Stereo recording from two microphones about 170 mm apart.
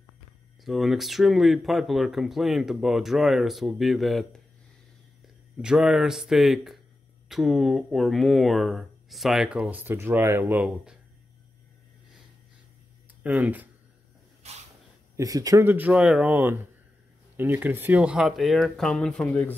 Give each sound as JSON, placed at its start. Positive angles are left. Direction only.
{"t": 0.7, "sound": "speech", "side_deg": 0}
{"t": 13.2, "sound": "speech", "side_deg": -10}
{"t": 14.4, "sound": "a sound", "side_deg": -40}
{"t": 15.1, "sound": "speech", "side_deg": -20}